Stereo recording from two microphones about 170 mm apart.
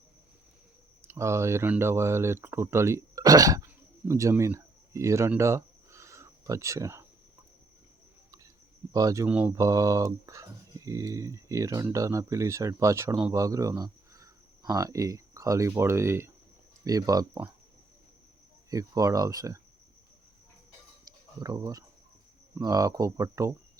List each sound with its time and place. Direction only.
1.0 s speech: 15° right (ahead or behind)
8.9 s speech: 20° right (ahead or behind)
18.7 s speech: 20° right (ahead or behind)
21.0 s a sound: 20° right (ahead or behind)
22.5 s speech: 20° right (ahead or behind)